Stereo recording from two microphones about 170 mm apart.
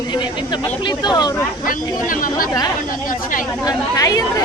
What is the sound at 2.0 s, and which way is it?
Speech, 55° left (ahead or behind).